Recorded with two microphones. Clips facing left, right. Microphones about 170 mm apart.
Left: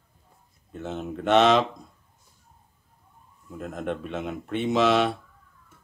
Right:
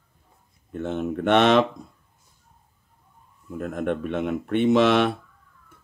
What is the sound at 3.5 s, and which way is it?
Speech, 55° right (ahead or behind).